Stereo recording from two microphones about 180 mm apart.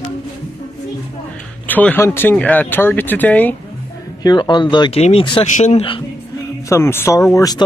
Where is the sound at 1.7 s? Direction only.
10° left (ahead or behind).